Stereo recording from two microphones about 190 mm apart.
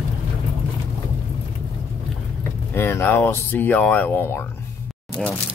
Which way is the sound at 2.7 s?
15° left (ahead or behind).